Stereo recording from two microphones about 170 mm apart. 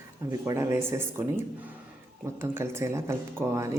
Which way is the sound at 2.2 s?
15° right (ahead or behind).